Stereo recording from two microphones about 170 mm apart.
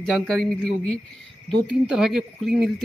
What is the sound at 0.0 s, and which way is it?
Speech, centre (ahead or behind).